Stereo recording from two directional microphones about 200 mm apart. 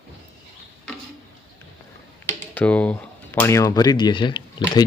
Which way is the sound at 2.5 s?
5° left (ahead or behind).